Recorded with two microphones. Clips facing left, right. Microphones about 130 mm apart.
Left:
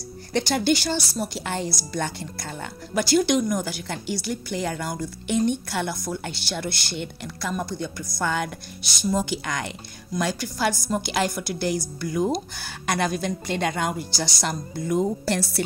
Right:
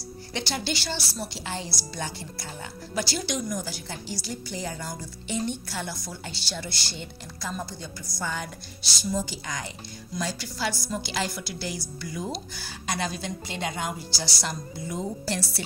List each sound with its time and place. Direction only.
0.3 s a woman's voice: 50° left (ahead or behind)